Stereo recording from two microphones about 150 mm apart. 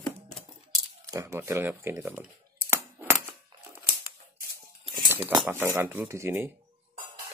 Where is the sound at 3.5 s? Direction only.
30° right (ahead or behind).